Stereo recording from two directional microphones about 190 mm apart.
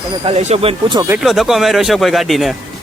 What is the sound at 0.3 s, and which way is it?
Speech, 35° right (ahead or behind).